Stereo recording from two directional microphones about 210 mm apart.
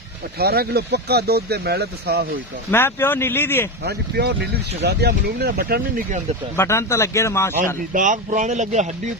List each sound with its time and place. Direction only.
0.3 s speech: 45° right (ahead or behind)
2.6 s speech: 10° left (ahead or behind)
3.8 s speech: 50° right (ahead or behind)
6.6 s speech: 15° left (ahead or behind)
7.8 s speech: 40° right (ahead or behind)